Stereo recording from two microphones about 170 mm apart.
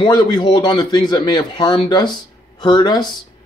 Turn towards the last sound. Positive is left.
turn(degrees=25)  # may be behind; listen again after turning